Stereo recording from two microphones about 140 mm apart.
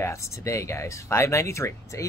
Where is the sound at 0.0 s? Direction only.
20° left (ahead or behind).